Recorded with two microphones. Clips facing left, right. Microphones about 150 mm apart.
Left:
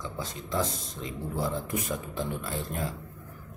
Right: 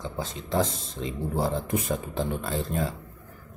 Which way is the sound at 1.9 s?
80° right.